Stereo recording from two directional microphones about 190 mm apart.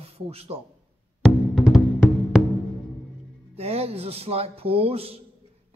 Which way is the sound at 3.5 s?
30° right (ahead or behind).